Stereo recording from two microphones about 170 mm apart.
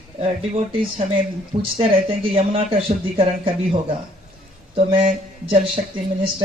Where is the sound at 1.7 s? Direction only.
35° right (ahead or behind).